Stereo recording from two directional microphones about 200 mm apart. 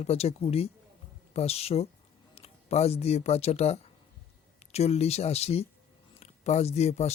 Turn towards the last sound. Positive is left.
turn(degrees=30)  # may be behind; listen again after turning